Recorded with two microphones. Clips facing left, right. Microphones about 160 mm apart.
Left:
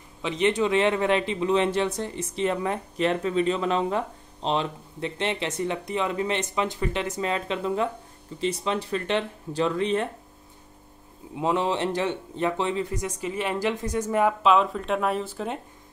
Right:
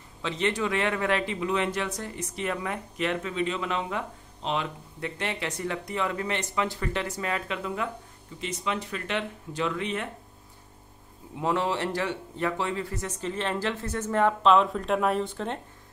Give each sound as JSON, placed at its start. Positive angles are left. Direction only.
{"t": 0.2, "sound": "speech", "side_deg": 20}
{"t": 11.3, "sound": "speech", "side_deg": 20}